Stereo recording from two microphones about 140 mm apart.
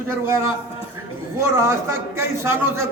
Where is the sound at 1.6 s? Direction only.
20° right (ahead or behind).